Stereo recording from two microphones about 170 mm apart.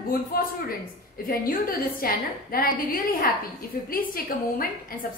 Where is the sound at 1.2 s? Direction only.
60° left (ahead or behind).